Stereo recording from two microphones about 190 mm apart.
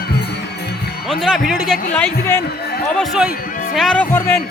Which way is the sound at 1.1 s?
Centre (ahead or behind).